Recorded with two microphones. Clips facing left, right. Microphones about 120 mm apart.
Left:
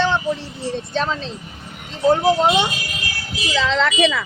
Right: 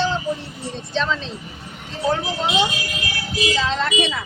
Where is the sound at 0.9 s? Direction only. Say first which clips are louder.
Right 2 dB; 45° left (ahead or behind).